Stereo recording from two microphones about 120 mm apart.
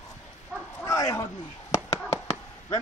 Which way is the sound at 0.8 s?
30° left (ahead or behind).